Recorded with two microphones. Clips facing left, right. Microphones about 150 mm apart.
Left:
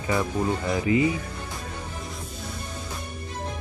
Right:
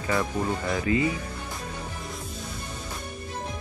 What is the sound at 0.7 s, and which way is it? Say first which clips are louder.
Speech: left 3 dB; 20° left (ahead or behind).